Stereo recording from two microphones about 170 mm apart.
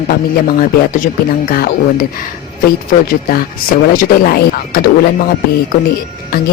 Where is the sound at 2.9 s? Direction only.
60° left (ahead or behind).